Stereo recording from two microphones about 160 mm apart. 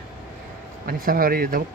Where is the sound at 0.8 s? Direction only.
65° right (ahead or behind).